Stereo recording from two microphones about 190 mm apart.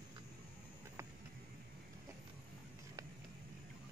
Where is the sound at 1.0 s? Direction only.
15° right (ahead or behind).